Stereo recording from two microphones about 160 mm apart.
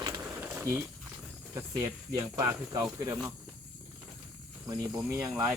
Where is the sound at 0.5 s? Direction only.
10° right (ahead or behind).